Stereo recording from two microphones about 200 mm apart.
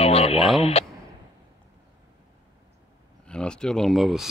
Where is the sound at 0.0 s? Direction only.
30° left (ahead or behind).